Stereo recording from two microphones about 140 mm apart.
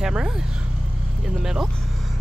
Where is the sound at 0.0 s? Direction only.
5° right (ahead or behind).